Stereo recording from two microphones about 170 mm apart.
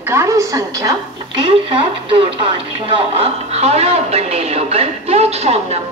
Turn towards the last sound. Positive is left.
turn(degrees=-40)  # may be behind; listen again after turning